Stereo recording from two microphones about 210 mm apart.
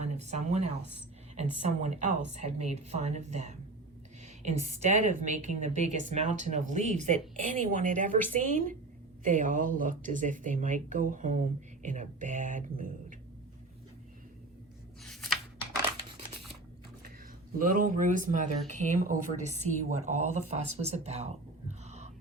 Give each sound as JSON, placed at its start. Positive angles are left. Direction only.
{"t": 0.0, "sound": "a woman's voice", "side_deg": -35}
{"t": 15.0, "sound": "a sound", "side_deg": 0}
{"t": 17.6, "sound": "a woman's voice", "side_deg": -40}